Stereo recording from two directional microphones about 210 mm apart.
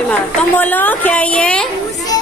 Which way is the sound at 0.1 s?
10° left (ahead or behind).